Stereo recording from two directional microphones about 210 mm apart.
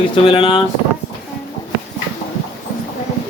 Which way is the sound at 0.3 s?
25° left (ahead or behind).